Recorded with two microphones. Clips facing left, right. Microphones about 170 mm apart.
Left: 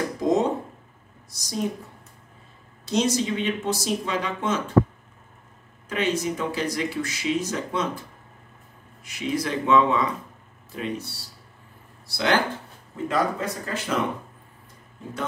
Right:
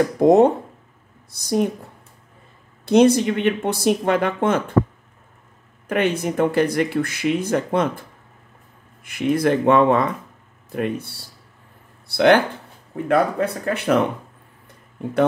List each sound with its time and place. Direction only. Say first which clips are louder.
0.2 s speech: right 9 dB; 60° right (ahead or behind)
2.8 s speech: right 9 dB; 55° right (ahead or behind)
5.9 s speech: right 4 dB; 55° right (ahead or behind)
9.0 s speech: right 8 dB; 55° right (ahead or behind)